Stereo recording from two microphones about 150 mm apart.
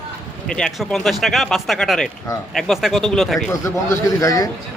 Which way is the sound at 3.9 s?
20° left (ahead or behind).